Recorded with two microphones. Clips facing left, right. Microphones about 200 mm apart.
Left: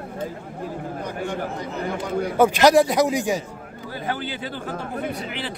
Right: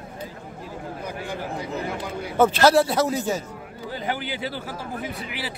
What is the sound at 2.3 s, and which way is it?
Speech, 15° left (ahead or behind).